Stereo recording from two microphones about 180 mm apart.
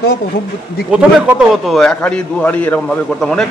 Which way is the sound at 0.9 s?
5° right (ahead or behind).